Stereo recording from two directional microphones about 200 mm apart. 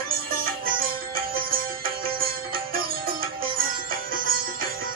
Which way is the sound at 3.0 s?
45° right (ahead or behind).